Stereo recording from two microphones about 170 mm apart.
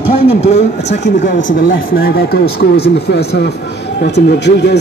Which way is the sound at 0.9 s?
90° left.